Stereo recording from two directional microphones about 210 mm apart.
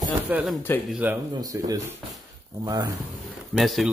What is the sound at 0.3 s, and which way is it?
Speech, 5° right (ahead or behind).